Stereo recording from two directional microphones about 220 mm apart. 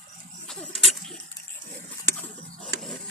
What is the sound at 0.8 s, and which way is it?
Goat, centre (ahead or behind).